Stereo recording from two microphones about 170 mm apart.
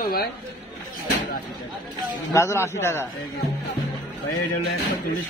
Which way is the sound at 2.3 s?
15° left (ahead or behind).